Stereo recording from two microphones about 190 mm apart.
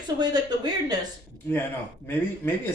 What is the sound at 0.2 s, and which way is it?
Speech, 20° right (ahead or behind).